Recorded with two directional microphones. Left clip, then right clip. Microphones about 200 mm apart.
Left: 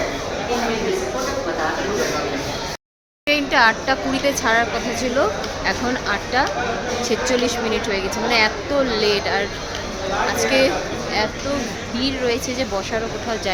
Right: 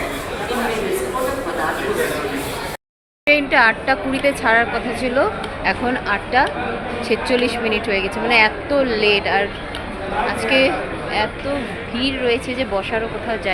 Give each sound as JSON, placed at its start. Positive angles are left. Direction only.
{"t": 3.2, "sound": "a woman's voice", "side_deg": 0}
{"t": 11.9, "sound": "a woman's voice", "side_deg": 0}